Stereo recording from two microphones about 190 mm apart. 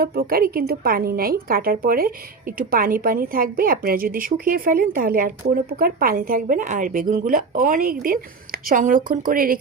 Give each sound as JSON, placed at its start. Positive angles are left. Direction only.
{"t": 0.0, "sound": "a woman's voice", "side_deg": -50}